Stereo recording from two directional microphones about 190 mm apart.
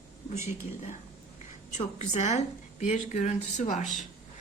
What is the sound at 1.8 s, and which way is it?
A woman's voice, 40° left (ahead or behind).